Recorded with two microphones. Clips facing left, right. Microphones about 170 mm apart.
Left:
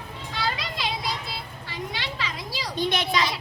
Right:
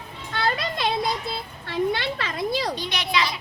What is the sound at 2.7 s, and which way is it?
Speech, 50° left (ahead or behind).